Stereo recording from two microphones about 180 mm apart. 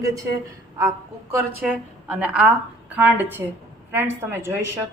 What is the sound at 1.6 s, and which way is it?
A woman's voice, 5° right (ahead or behind).